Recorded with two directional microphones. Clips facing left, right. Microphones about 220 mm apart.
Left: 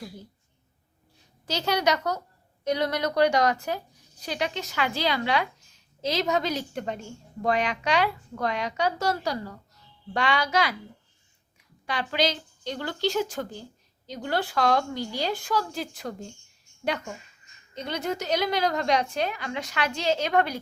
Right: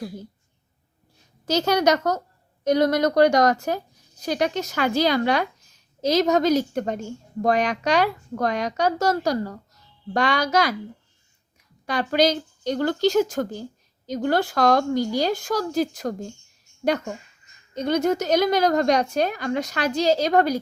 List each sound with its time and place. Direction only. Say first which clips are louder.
1.5 s a woman's voice: right 6 dB; 45° right (ahead or behind)
11.9 s a woman's voice: right 7 dB; 45° right (ahead or behind)